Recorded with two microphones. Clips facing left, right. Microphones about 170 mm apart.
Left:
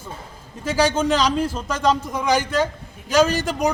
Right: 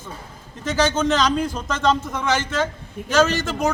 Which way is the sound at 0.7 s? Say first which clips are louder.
Left 1 dB; 10° left (ahead or behind).